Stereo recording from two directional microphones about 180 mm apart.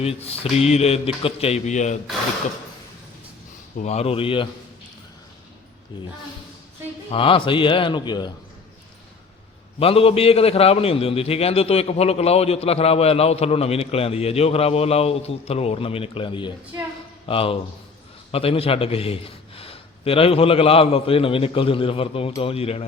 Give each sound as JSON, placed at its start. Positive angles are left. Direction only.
{"t": 0.0, "sound": "a man's voice", "side_deg": 35}
{"t": 3.8, "sound": "a man's voice", "side_deg": 40}
{"t": 7.1, "sound": "a man's voice", "side_deg": 30}
{"t": 9.8, "sound": "a man's voice", "side_deg": 30}